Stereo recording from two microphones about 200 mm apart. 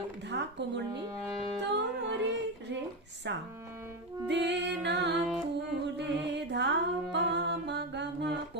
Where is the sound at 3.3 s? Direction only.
60° right (ahead or behind).